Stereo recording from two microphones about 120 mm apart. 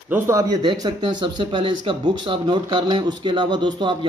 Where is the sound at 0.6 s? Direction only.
40° right (ahead or behind).